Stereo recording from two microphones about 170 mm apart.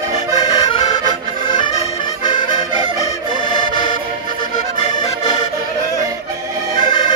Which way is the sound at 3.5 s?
25° left (ahead or behind).